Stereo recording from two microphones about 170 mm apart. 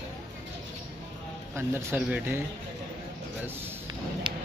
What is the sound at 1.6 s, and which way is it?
Speech, 15° right (ahead or behind).